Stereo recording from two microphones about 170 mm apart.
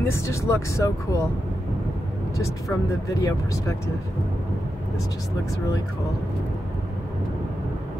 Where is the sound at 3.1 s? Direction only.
20° left (ahead or behind).